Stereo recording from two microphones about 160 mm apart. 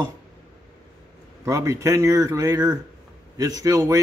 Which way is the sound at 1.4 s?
20° right (ahead or behind).